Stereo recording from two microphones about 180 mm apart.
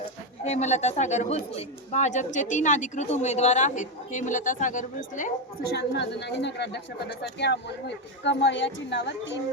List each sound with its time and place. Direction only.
0.4 s speech: 40° left (ahead or behind)
5.7 s speech: 70° left (ahead or behind)